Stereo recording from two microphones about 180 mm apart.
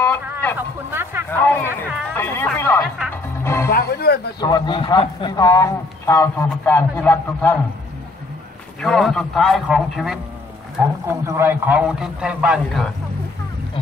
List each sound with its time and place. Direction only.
0.0 s vehicle: 10° left (ahead or behind)
0.6 s a sound: 10° right (ahead or behind)
1.3 s a sound: 10° left (ahead or behind)
2.1 s music: 10° left (ahead or behind)
3.7 s roaring cats: 60° left (ahead or behind)
4.4 s a man's voice: 20° left (ahead or behind)
8.8 s a man's voice: centre (ahead or behind)
11.1 s a man's voice: 15° right (ahead or behind)